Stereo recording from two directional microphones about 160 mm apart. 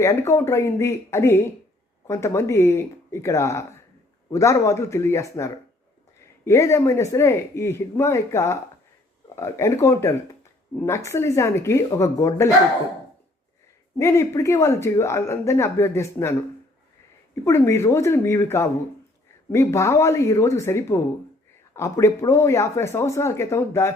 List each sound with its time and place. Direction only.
0.0 s speech: 20° left (ahead or behind)
14.0 s speech: 20° left (ahead or behind)
17.4 s speech: 15° left (ahead or behind)